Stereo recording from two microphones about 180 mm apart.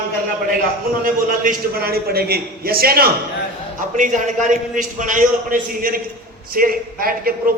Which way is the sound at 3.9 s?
45° right (ahead or behind).